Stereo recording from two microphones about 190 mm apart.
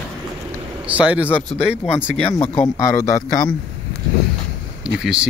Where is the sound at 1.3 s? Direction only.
10° left (ahead or behind).